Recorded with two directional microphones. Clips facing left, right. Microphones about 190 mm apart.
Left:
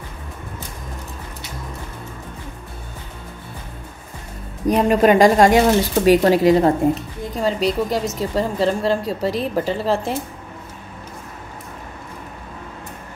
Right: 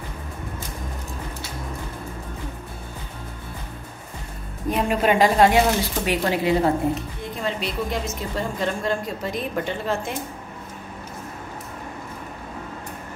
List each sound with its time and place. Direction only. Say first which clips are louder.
4.6 s a woman's voice: left 6 dB; 45° left (ahead or behind)